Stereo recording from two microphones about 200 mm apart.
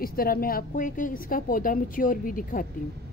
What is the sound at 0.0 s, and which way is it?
Speech, 45° left (ahead or behind).